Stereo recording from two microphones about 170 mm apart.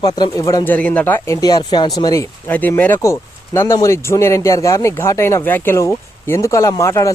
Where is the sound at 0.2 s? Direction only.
20° left (ahead or behind).